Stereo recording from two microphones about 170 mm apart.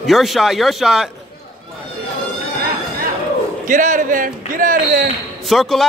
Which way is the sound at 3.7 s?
50° right (ahead or behind).